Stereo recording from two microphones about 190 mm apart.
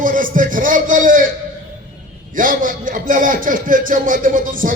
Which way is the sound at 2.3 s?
45° right (ahead or behind).